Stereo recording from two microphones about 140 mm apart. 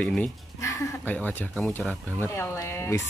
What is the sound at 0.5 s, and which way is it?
Speech, 20° left (ahead or behind).